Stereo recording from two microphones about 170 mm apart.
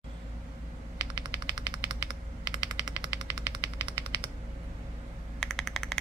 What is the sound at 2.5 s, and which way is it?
Machine gun, 20° right (ahead or behind).